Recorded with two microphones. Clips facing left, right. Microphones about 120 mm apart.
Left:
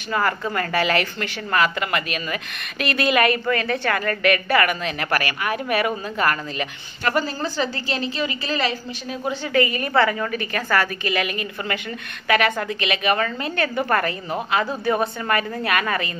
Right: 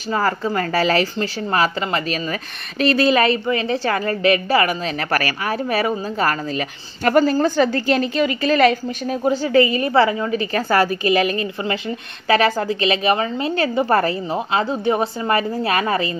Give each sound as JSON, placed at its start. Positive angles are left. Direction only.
{"t": 0.1, "sound": "a woman's voice", "side_deg": -30}
{"t": 7.1, "sound": "a woman's voice", "side_deg": -45}
{"t": 9.2, "sound": "a woman's voice", "side_deg": -40}